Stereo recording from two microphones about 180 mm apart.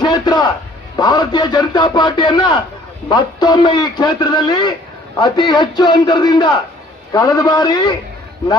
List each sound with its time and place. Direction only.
0.0 s a man's voice: 25° left (ahead or behind)